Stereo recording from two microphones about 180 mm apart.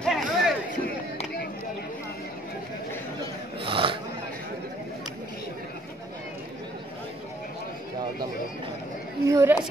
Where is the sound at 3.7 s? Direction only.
30° right (ahead or behind).